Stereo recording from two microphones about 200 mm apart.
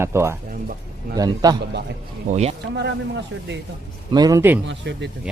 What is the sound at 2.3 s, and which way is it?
Speech, 30° right (ahead or behind).